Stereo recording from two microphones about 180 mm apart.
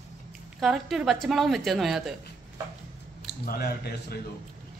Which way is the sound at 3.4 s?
55° left (ahead or behind).